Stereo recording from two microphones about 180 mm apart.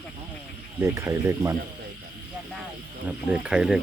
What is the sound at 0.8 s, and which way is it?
Speech, 15° right (ahead or behind).